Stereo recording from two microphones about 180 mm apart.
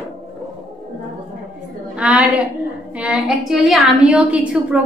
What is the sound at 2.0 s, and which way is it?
A woman's voice, 5° right (ahead or behind).